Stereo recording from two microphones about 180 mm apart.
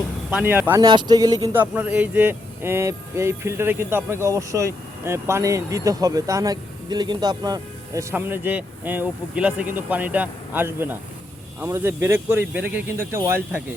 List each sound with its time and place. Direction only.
0.3 s speech: 10° right (ahead or behind)
0.9 s speech: 25° right (ahead or behind)
1.5 s speech: 10° right (ahead or behind)
8.1 s speech: 10° right (ahead or behind)